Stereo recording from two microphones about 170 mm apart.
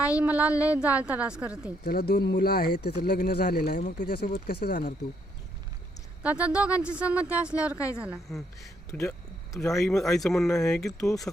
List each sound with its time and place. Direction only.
0.2 s speech: 10° right (ahead or behind)
1.8 s speech: 60° left (ahead or behind)
6.2 s a woman's voice: 10° right (ahead or behind)
9.0 s a sound: centre (ahead or behind)
9.6 s speech: 20° left (ahead or behind)
10.0 s a woman's voice: centre (ahead or behind)
11.0 s speech: 20° left (ahead or behind)